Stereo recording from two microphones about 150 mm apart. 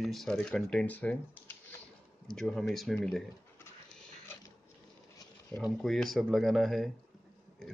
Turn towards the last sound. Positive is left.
turn(degrees=0)  # may be behind; listen again after turning